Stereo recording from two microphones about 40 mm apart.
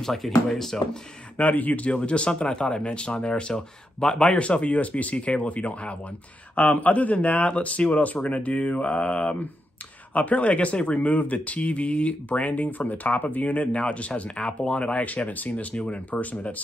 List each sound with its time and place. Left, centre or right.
0.0 s speech: centre
1.4 s speech: left; by 4.4 s centre
4.4 s speech: left
14.4 s speech: left
15.0 s speech: left